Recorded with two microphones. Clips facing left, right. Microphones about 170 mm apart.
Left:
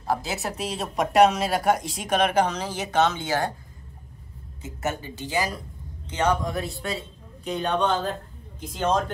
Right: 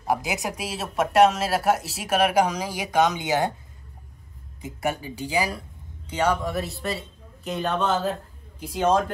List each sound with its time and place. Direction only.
0.0 s speech: 15° right (ahead or behind)
4.6 s a man's voice: 15° right (ahead or behind)